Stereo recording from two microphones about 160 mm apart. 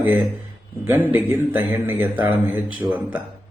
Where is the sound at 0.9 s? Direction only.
15° right (ahead or behind).